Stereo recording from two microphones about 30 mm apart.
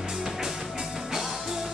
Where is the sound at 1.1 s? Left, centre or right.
Centre.